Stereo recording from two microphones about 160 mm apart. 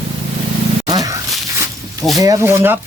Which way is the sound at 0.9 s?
25° right (ahead or behind).